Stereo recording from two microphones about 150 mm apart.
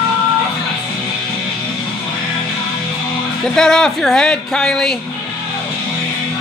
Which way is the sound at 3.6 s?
5° left (ahead or behind).